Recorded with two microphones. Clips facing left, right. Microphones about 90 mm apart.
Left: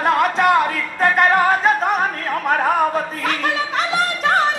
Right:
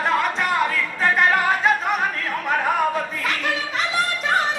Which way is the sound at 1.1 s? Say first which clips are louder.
Left 4 dB; 40° left (ahead or behind).